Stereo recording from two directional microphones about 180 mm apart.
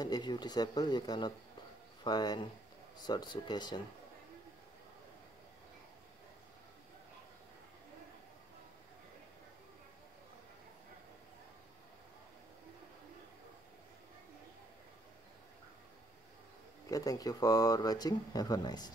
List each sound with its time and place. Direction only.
0.0 s speech: 25° left (ahead or behind)
16.9 s speech: 20° left (ahead or behind)